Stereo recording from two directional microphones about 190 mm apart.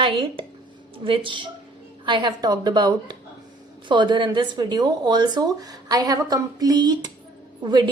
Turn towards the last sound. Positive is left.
turn(degrees=-25)  # may be behind; listen again after turning